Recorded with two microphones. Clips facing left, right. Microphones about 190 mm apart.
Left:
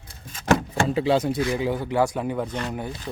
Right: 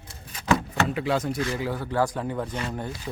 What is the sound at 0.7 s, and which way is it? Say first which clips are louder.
Speech: left 4 dB; 30° left (ahead or behind).